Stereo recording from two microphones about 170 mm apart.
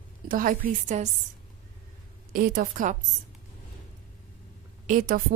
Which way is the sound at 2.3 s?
55° right (ahead or behind).